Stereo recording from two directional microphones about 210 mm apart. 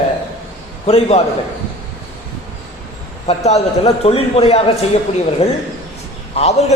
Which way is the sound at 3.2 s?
30° left (ahead or behind).